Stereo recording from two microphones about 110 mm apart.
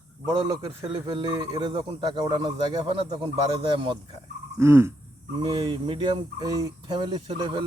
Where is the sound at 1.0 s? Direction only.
45° right (ahead or behind).